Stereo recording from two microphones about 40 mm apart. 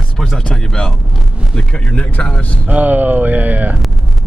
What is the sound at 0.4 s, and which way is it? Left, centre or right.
Speech, left.